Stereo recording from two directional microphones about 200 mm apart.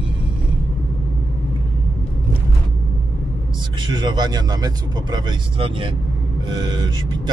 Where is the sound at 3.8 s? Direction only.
20° right (ahead or behind).